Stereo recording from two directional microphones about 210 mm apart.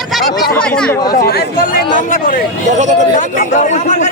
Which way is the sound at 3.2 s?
35° left (ahead or behind).